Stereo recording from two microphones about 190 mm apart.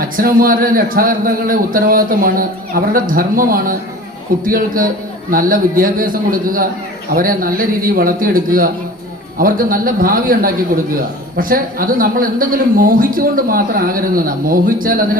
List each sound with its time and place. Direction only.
0.0 s a man's voice: 50° right (ahead or behind)
9.4 s a man's voice: 50° right (ahead or behind)